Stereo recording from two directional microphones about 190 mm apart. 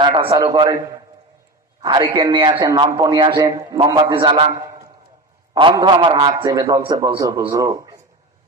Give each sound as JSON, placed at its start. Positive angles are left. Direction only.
{"t": 0.0, "sound": "a man's voice", "side_deg": -30}